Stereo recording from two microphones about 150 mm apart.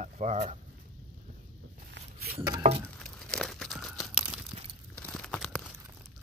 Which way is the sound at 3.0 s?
5° left (ahead or behind).